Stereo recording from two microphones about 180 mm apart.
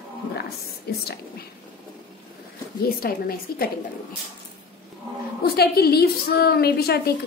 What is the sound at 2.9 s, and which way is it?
Speech, 55° left (ahead or behind).